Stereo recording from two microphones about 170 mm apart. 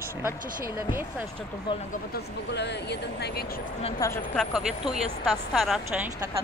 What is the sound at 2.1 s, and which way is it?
Speech, 80° left.